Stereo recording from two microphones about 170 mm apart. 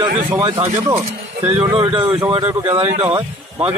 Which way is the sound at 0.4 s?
20° right (ahead or behind).